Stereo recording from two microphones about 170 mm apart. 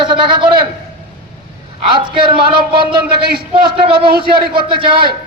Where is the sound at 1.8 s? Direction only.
30° right (ahead or behind).